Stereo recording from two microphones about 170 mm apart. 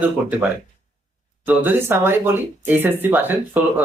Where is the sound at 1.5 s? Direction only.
10° right (ahead or behind).